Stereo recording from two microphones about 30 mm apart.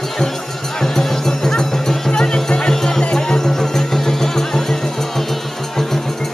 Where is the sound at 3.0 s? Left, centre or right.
Left.